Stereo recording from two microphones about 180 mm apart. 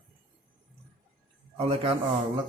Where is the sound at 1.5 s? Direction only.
30° right (ahead or behind).